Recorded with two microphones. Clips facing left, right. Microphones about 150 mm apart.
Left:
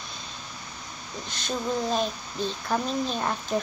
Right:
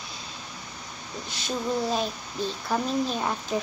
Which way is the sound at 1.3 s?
5° right (ahead or behind).